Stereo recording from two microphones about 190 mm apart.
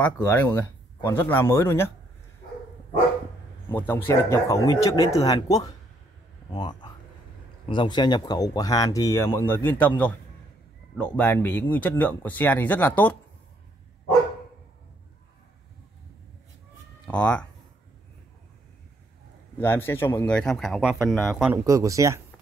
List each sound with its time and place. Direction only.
0.0 s speech: 10° left (ahead or behind)
3.6 s speech: 10° left (ahead or behind)
17.1 s speech: 5° left (ahead or behind)
19.6 s speech: 10° left (ahead or behind)
21.6 s speech: 15° right (ahead or behind)